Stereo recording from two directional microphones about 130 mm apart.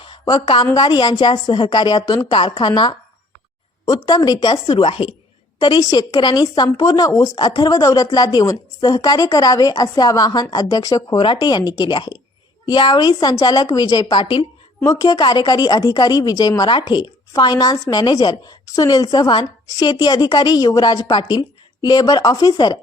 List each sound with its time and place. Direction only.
0.0 s a woman's voice: 40° left (ahead or behind)
7.4 s a woman's voice: 35° left (ahead or behind)
14.8 s a woman's voice: 25° left (ahead or behind)